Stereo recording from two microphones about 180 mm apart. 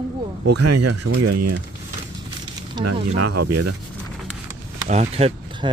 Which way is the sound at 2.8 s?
25° right (ahead or behind).